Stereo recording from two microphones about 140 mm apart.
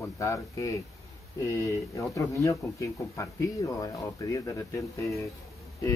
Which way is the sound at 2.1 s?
25° left (ahead or behind).